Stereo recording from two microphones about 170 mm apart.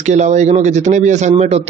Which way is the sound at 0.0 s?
45° right (ahead or behind).